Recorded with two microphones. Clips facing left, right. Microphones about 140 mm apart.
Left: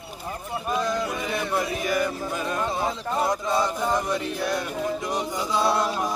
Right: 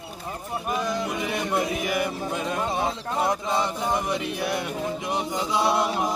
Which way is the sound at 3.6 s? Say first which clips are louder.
Left 1 dB; 15° right (ahead or behind).